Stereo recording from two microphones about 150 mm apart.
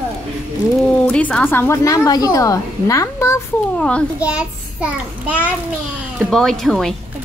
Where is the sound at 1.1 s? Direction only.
5° left (ahead or behind).